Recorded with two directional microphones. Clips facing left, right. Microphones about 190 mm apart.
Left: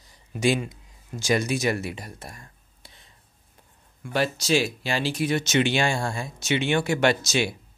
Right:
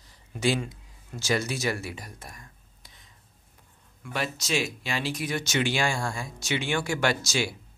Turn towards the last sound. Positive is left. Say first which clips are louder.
# left 4 dB
turn(degrees=20)  # may be behind; listen again after turning